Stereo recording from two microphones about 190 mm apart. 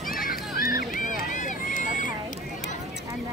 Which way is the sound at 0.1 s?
50° left (ahead or behind).